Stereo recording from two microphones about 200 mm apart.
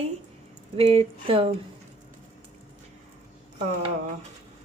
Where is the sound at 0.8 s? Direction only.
30° right (ahead or behind).